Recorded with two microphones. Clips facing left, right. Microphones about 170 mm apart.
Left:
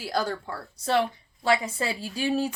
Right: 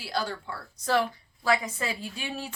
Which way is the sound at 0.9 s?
25° left (ahead or behind).